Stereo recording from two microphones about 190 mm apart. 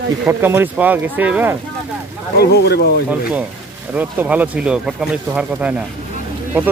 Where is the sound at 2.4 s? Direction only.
55° left (ahead or behind).